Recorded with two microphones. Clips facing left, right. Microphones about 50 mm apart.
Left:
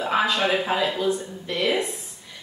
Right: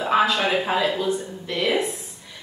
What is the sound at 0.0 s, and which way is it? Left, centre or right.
A man's voice, centre.